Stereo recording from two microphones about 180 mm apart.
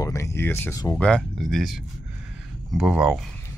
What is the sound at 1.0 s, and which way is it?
Speech, 5° left (ahead or behind).